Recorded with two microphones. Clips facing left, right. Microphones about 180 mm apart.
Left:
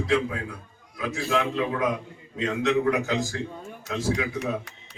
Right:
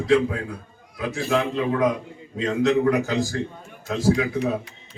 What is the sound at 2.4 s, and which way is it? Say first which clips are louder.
Speech: right 4 dB; 35° right (ahead or behind).